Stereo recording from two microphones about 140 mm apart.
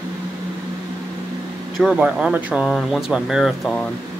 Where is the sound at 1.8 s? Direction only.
5° right (ahead or behind).